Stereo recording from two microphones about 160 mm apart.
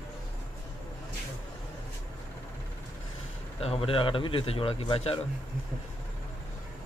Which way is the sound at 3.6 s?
35° left (ahead or behind).